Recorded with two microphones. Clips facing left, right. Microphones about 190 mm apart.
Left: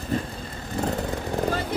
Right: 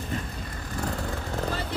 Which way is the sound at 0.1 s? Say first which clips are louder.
Left 7 dB; 35° left (ahead or behind).